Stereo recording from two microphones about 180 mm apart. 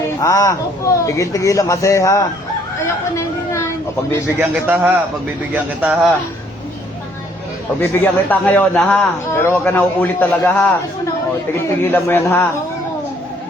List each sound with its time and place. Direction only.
0.2 s a man's voice: 15° left (ahead or behind)
2.8 s a sound: 15° left (ahead or behind)
4.4 s a man's voice: 15° right (ahead or behind)
7.8 s a man's voice: 10° left (ahead or behind)